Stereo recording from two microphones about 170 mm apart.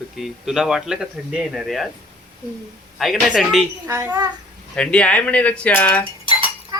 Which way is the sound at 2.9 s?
Centre (ahead or behind).